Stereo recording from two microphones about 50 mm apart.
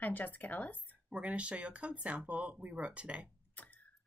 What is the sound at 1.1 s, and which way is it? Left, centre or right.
Speech, right.